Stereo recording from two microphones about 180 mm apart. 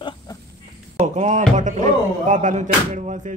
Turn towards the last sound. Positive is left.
turn(degrees=-40)  # may be behind; listen again after turning